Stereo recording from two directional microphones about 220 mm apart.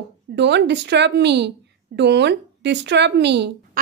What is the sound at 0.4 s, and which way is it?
Speech, 50° right (ahead or behind).